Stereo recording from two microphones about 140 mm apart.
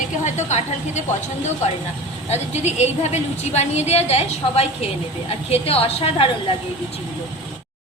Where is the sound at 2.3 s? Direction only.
50° left (ahead or behind).